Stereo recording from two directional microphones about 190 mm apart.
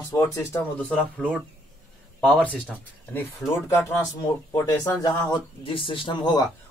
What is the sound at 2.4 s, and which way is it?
Speech, 5° left (ahead or behind).